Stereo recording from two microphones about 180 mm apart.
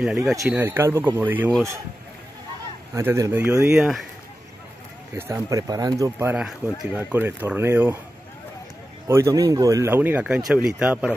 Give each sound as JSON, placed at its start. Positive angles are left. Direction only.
{"t": 0.0, "sound": "speech", "side_deg": -10}
{"t": 2.9, "sound": "speech", "side_deg": -15}
{"t": 5.1, "sound": "speech", "side_deg": -15}
{"t": 9.0, "sound": "speech", "side_deg": -15}